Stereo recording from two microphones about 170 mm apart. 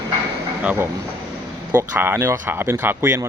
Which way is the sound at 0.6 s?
10° right (ahead or behind).